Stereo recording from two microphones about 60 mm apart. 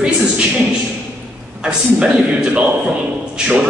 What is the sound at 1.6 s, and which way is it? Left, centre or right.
A man's voice, centre.